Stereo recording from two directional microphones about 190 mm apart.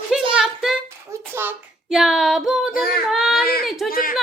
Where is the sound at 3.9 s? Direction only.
50° left (ahead or behind).